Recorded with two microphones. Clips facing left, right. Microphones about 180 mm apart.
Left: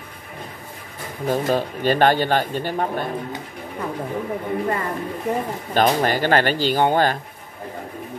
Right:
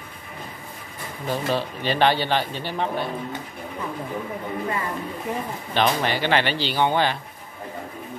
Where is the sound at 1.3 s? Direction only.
45° left (ahead or behind).